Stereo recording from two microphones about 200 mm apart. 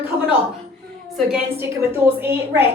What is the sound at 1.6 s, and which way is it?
A woman's voice, 10° right (ahead or behind).